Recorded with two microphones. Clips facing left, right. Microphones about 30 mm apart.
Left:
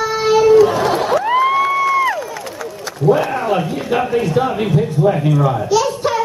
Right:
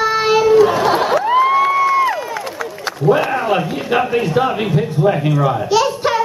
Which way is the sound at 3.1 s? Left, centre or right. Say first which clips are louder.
Even; right.